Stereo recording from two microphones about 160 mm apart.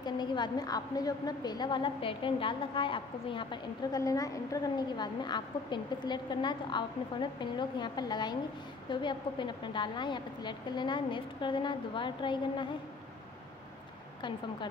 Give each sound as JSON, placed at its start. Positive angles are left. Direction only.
{"t": 0.0, "sound": "a woman's voice", "side_deg": 30}
{"t": 3.9, "sound": "a woman's voice", "side_deg": 20}